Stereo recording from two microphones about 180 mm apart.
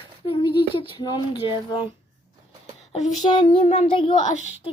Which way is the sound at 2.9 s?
40° left (ahead or behind).